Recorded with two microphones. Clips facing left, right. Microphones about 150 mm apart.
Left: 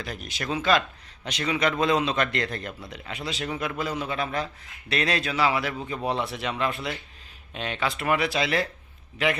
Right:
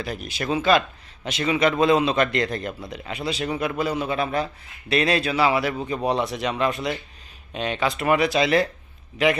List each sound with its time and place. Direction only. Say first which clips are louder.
0.0 s a man's voice: right 5 dB; 10° right (ahead or behind)